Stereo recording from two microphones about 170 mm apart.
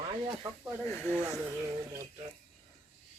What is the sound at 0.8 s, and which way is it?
Speech, 10° left (ahead or behind).